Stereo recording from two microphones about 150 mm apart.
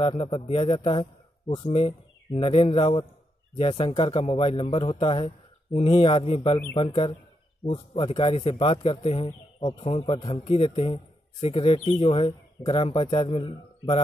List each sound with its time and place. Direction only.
0.0 s a man's voice: 40° left (ahead or behind)
9.8 s a man's voice: 40° left (ahead or behind)